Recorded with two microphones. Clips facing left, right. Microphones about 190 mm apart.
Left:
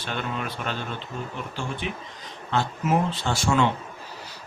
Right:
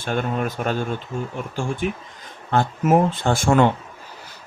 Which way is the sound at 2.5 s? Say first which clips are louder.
Right 6 dB; 50° right (ahead or behind).